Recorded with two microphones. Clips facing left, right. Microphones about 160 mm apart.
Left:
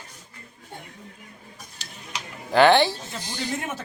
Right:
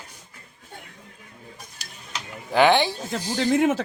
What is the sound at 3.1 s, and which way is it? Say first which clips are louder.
Speech: right 9 dB; 90° right.